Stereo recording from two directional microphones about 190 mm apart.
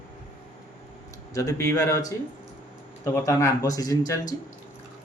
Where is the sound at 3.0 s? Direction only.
15° left (ahead or behind).